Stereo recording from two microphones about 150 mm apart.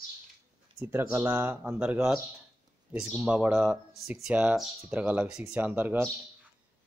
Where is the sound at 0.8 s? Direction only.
15° right (ahead or behind).